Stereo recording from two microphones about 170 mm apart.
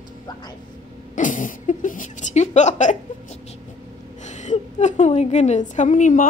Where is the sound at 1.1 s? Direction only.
50° left (ahead or behind).